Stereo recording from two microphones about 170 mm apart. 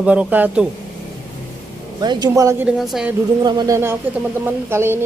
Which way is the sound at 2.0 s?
20° right (ahead or behind).